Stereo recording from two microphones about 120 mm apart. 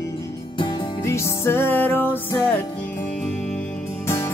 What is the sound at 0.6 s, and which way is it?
Music, 40° left (ahead or behind).